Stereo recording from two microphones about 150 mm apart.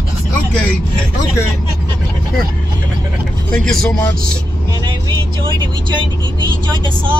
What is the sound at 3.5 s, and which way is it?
Speech, 5° left (ahead or behind).